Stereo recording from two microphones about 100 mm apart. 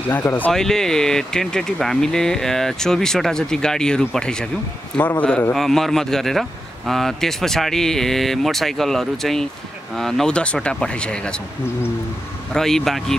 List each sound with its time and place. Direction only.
0.1 s speech: 20° left (ahead or behind)
0.5 s speech: 5° left (ahead or behind)
5.5 s speech: 5° left (ahead or behind)
12.5 s speech: 5° left (ahead or behind)